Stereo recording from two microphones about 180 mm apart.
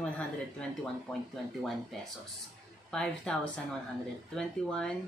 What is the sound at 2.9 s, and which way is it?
Speech, 5° left (ahead or behind).